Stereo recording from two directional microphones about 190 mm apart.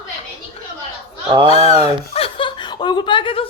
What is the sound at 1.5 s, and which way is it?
Speech, 30° left (ahead or behind).